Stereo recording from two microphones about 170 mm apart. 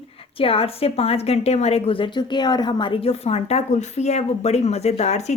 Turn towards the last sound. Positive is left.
turn(degrees=40)  # may be behind; listen again after turning